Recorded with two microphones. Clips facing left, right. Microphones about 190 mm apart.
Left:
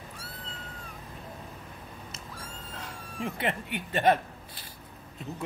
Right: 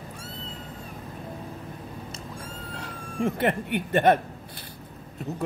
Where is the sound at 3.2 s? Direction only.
50° right (ahead or behind).